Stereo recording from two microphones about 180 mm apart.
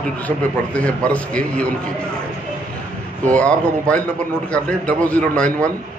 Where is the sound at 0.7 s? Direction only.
5° left (ahead or behind).